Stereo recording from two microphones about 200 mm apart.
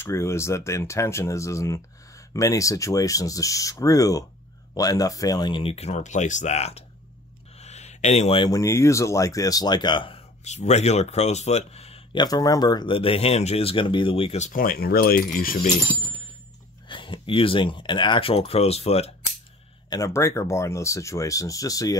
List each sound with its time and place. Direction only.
0.0 s speech: 15° left (ahead or behind); by 15.2 s 50° left (ahead or behind)
16.8 s speech: 25° left (ahead or behind)
19.9 s speech: 15° left (ahead or behind)